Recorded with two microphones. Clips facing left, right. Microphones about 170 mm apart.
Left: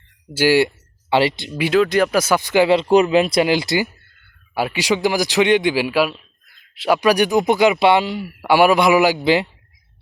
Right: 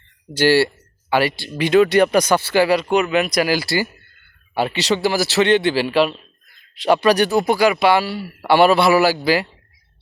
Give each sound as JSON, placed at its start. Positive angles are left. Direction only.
{"t": 0.3, "sound": "a man's voice", "side_deg": 10}
{"t": 1.5, "sound": "a man's voice", "side_deg": 10}
{"t": 4.5, "sound": "a man's voice", "side_deg": 10}